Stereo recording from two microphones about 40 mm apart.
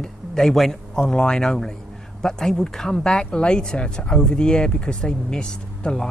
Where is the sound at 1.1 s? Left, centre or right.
Centre.